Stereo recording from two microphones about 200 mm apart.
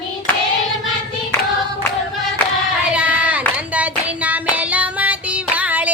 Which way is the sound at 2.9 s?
5° right (ahead or behind).